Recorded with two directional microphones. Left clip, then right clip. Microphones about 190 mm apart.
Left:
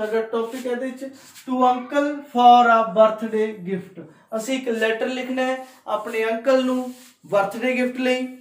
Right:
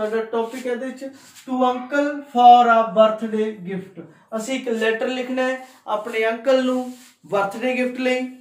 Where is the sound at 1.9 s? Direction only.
15° right (ahead or behind).